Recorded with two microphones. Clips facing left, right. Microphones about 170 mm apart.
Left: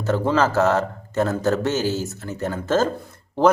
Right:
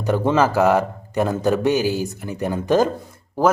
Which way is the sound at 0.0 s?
15° right (ahead or behind).